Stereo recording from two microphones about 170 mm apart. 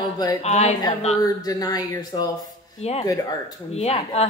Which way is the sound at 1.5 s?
20° left (ahead or behind).